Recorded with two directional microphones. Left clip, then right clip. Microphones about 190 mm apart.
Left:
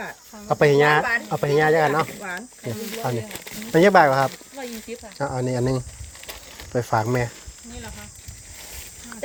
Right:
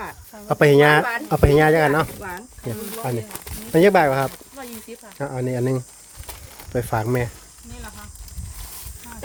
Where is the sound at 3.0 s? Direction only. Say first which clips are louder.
Even; 25° right (ahead or behind).